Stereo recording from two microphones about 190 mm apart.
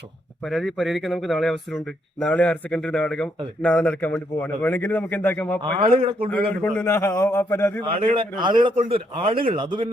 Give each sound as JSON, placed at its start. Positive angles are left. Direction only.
{"t": 0.4, "sound": "a man's voice", "side_deg": 0}
{"t": 5.8, "sound": "a man's voice", "side_deg": -30}
{"t": 6.3, "sound": "a man's voice", "side_deg": 5}
{"t": 8.0, "sound": "a man's voice", "side_deg": -25}